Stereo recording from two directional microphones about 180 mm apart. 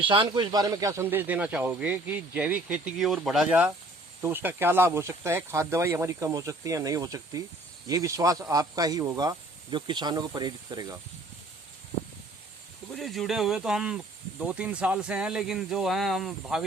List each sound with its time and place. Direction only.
0.0 s speech: 30° right (ahead or behind)
13.0 s speech: centre (ahead or behind)